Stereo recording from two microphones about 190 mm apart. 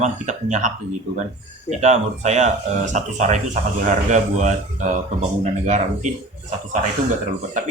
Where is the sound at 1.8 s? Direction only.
35° right (ahead or behind).